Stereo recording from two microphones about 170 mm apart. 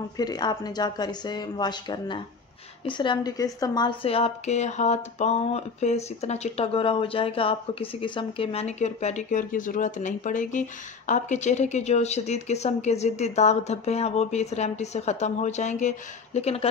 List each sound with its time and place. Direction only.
0.2 s speech: 25° left (ahead or behind)